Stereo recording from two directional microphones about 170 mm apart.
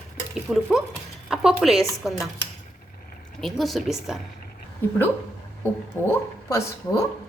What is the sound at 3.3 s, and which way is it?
Speech, centre (ahead or behind).